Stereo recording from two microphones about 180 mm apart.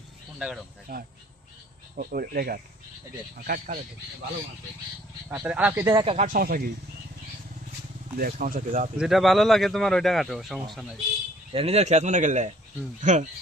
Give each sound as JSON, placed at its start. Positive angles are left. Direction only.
{"t": 0.3, "sound": "speech", "side_deg": -5}
{"t": 2.0, "sound": "speech", "side_deg": -55}
{"t": 5.3, "sound": "speech", "side_deg": -5}
{"t": 6.1, "sound": "speech", "side_deg": -45}
{"t": 8.2, "sound": "speech", "side_deg": -50}
{"t": 9.0, "sound": "speech", "side_deg": 0}
{"t": 11.5, "sound": "speech", "side_deg": -35}